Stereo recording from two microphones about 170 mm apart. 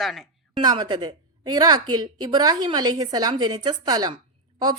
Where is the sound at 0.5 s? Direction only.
25° right (ahead or behind).